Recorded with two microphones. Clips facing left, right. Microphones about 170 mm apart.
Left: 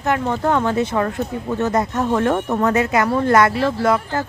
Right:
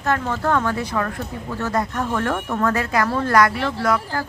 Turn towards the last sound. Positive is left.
turn(degrees=25)  # may be behind; listen again after turning